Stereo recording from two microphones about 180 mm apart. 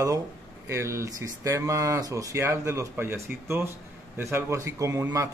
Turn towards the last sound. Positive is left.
turn(degrees=-15)  # may be behind; listen again after turning